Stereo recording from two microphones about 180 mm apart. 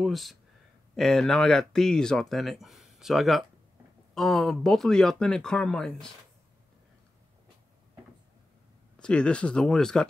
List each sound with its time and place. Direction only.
0.0 s speech: centre (ahead or behind)
9.0 s speech: 5° left (ahead or behind)